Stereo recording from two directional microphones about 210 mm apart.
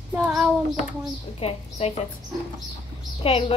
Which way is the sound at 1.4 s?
30° left (ahead or behind).